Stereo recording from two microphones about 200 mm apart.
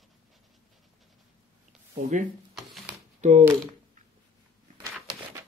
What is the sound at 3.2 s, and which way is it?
Speech, 35° right (ahead or behind).